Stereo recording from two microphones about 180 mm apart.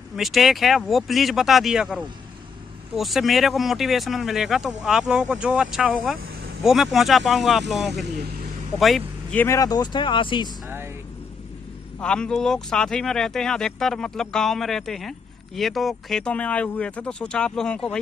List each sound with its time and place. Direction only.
0.1 s speech: centre (ahead or behind)
3.0 s speech: centre (ahead or behind)
9.6 s speech: 20° left (ahead or behind)
12.0 s speech: 5° left (ahead or behind)